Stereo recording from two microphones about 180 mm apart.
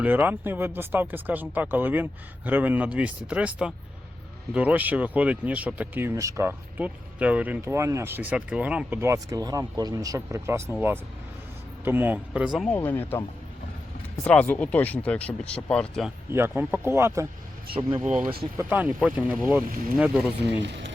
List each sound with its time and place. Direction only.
0.0 s speech: 10° right (ahead or behind)
12.6 s speech: 10° left (ahead or behind)
14.3 s speech: 10° left (ahead or behind)
16.3 s speech: 10° right (ahead or behind)
20.6 s speech: 80° right